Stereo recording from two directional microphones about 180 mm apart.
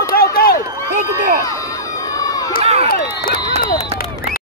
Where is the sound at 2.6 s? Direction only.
35° right (ahead or behind).